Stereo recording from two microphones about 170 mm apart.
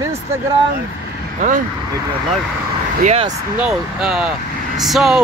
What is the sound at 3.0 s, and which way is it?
Speech, 40° right (ahead or behind).